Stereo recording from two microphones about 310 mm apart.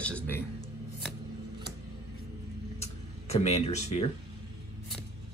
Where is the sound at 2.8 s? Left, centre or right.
Centre.